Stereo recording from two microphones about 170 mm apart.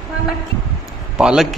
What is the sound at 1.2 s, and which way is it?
Speech, 5° right (ahead or behind).